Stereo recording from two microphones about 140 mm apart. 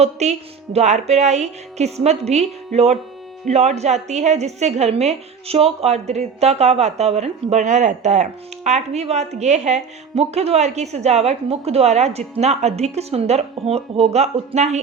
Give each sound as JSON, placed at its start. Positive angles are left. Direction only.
{"t": 0.0, "sound": "a woman's voice", "side_deg": -50}